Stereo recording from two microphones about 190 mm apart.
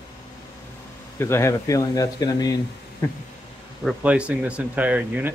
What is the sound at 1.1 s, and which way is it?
Speech, 15° left (ahead or behind).